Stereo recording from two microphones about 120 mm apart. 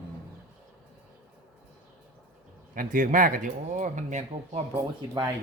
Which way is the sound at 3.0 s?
90° right.